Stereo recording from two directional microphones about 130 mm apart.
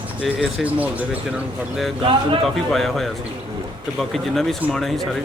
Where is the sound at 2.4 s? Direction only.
Centre (ahead or behind).